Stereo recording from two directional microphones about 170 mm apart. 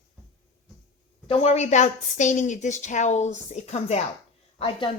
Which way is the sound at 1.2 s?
35° left (ahead or behind).